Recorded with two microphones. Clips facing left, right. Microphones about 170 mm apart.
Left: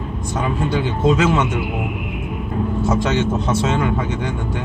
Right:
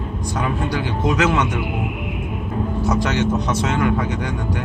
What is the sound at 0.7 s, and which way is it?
Speech, 25° left (ahead or behind).